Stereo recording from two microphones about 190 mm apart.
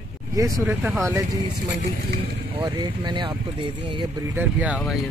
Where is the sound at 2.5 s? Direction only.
25° right (ahead or behind); by 5.0 s 5° right (ahead or behind).